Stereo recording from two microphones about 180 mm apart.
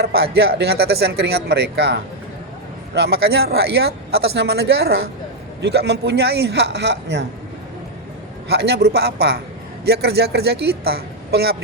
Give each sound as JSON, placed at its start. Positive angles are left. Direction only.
{"t": 0.0, "sound": "speech", "side_deg": -65}
{"t": 8.4, "sound": "speech", "side_deg": -65}